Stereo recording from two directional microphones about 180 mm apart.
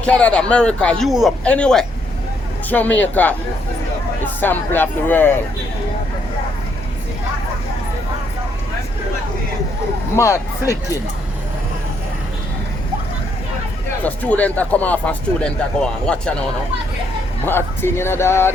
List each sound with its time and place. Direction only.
0.0 s a man's voice: 5° left (ahead or behind)
10.2 s speech: 15° left (ahead or behind)
14.0 s speech: 10° left (ahead or behind)
17.4 s speech: 10° left (ahead or behind)